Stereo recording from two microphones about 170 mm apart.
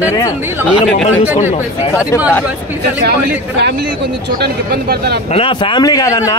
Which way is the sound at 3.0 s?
85° right.